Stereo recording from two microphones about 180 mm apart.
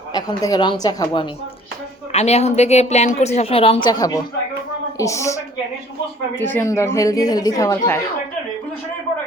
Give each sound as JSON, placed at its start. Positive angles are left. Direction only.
{"t": 0.1, "sound": "speech", "side_deg": 20}
{"t": 2.1, "sound": "a woman's voice", "side_deg": 35}